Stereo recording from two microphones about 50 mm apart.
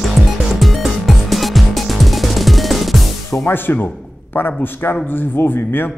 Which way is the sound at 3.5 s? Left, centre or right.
Left.